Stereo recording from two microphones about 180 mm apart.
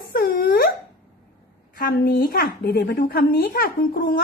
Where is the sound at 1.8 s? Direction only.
60° left (ahead or behind).